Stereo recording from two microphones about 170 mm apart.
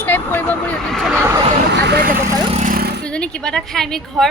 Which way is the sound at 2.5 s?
50° right (ahead or behind).